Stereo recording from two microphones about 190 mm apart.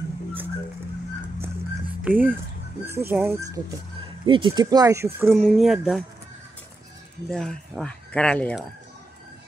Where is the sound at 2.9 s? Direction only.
10° right (ahead or behind).